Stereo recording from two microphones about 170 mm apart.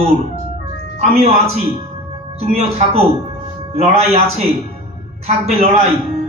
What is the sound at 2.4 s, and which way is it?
Speech, 35° right (ahead or behind).